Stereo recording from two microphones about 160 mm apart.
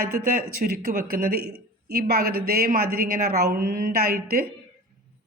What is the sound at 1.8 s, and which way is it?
Speech, 75° right (ahead or behind).